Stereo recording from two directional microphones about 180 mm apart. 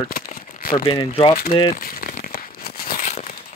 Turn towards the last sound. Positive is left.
turn(degrees=45)  # may be behind; listen again after turning